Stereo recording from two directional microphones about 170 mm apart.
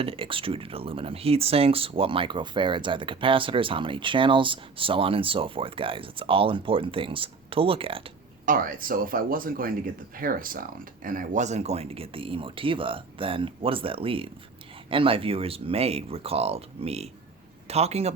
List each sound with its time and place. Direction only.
0.0 s speech: 30° right (ahead or behind)
8.4 s speech: 55° right (ahead or behind); by 18.1 s 40° right (ahead or behind)